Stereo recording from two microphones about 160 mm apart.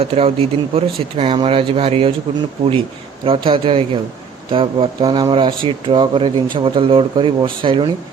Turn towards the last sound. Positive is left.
turn(degrees=-30)  # may be behind; listen again after turning